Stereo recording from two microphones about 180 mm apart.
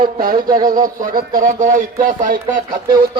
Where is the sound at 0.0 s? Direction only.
50° right (ahead or behind).